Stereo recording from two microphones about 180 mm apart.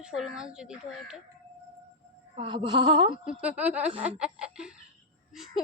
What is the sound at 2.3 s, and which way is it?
Speech, 30° right (ahead or behind).